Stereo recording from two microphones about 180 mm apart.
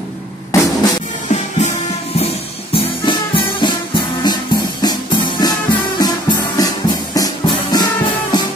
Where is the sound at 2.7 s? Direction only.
25° left (ahead or behind).